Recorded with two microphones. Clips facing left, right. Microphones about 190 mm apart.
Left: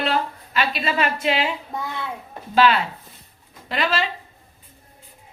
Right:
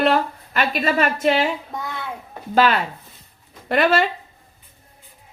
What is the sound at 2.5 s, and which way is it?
A woman's voice, 45° right (ahead or behind).